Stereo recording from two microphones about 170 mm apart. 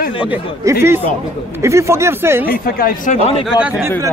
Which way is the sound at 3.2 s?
35° left (ahead or behind).